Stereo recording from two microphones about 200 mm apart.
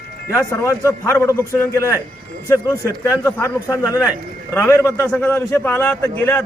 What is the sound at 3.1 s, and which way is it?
A man's voice, 15° left (ahead or behind).